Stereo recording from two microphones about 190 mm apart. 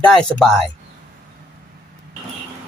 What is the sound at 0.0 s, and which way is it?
Speech, 5° left (ahead or behind).